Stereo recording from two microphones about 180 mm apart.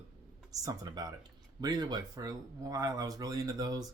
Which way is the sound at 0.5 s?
20° right (ahead or behind).